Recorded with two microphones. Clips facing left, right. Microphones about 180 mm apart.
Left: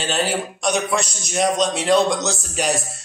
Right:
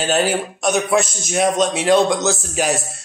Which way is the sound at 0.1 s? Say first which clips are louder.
Right 4 dB; centre (ahead or behind).